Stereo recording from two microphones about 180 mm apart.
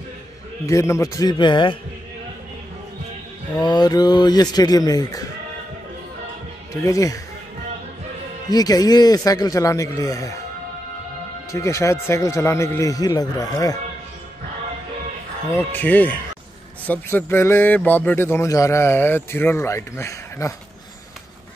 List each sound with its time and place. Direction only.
0.7 s speech: 15° left (ahead or behind)
3.5 s speech: 25° left (ahead or behind)
6.7 s a man's voice: 20° left (ahead or behind)
8.5 s speech: 20° left (ahead or behind)
11.5 s a man's voice: 15° left (ahead or behind)
15.5 s a man's voice: 10° left (ahead or behind)